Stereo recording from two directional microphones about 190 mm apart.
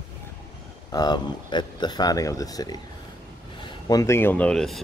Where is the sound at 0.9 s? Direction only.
20° left (ahead or behind).